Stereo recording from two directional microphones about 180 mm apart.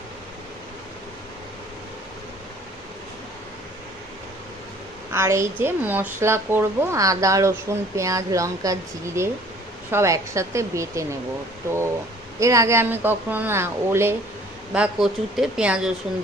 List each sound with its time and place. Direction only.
5.1 s speech: 15° right (ahead or behind)
12.4 s speech: 15° right (ahead or behind)